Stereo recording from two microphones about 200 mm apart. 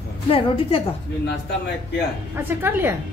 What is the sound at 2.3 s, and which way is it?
Speech, 10° right (ahead or behind).